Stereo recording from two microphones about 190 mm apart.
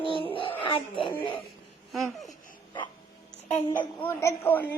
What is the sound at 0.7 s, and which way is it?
Speech, 25° left (ahead or behind).